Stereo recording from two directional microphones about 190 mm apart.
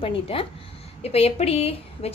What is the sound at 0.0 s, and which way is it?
A woman's voice, 30° left (ahead or behind).